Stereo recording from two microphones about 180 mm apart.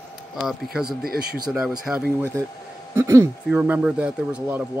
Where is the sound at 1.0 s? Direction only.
55° right (ahead or behind).